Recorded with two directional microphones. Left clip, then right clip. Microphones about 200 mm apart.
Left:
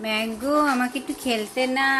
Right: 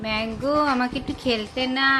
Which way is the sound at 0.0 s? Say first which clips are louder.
Even; centre (ahead or behind).